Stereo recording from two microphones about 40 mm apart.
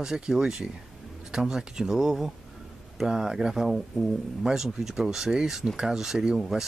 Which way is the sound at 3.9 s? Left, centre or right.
Centre.